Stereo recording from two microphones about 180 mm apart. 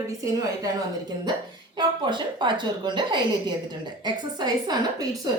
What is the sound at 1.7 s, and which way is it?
A woman's voice, 25° right (ahead or behind).